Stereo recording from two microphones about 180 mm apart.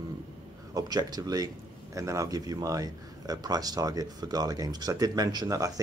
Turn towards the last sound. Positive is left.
turn(degrees=-20)  # may be behind; listen again after turning